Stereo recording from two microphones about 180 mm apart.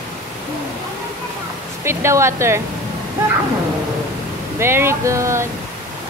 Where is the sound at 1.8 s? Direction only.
15° right (ahead or behind).